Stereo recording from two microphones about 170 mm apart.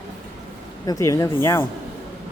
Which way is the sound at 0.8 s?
20° left (ahead or behind).